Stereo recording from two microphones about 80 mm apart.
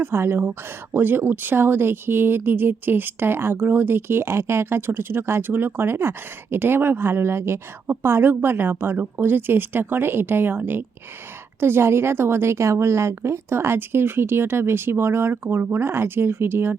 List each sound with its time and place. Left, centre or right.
0.0 s speech: right